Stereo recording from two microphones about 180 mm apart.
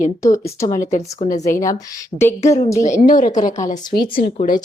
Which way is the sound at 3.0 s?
45° left (ahead or behind).